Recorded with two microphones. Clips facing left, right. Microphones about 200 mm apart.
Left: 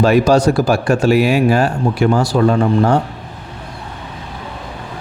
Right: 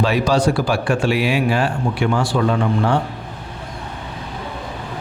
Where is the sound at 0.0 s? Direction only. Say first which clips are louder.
Left 6 dB; 45° left (ahead or behind).